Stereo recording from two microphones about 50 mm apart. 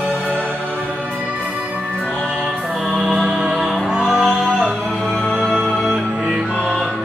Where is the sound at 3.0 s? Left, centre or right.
Centre.